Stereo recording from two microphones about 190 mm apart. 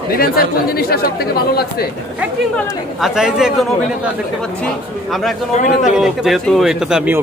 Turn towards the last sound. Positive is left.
turn(degrees=-5)  # may be behind; listen again after turning